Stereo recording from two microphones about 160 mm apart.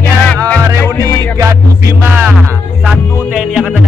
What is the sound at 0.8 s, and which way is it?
Music, 15° left (ahead or behind).